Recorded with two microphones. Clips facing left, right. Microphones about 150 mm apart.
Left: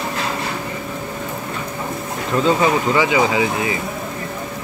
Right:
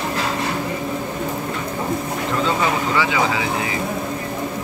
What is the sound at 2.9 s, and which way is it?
Speech, 20° left (ahead or behind).